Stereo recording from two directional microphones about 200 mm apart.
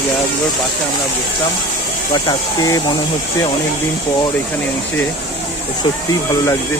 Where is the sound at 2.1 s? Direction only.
20° left (ahead or behind).